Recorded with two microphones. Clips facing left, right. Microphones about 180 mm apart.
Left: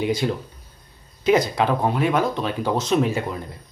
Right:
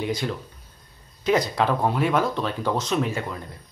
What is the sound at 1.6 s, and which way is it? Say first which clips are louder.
Speech: left 2 dB; 5° left (ahead or behind).